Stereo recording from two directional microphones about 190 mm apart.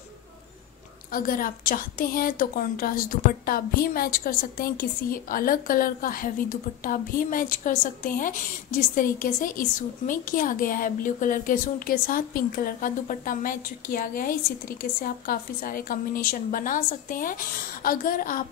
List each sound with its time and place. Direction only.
1.1 s a woman's voice: 45° left (ahead or behind)